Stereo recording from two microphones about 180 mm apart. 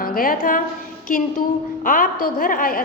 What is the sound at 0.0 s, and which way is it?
A woman's voice, 50° left (ahead or behind).